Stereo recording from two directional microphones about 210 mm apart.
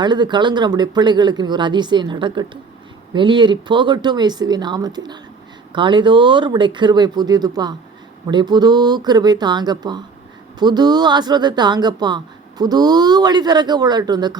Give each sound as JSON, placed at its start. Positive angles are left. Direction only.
{"t": 0.0, "sound": "speech", "side_deg": -20}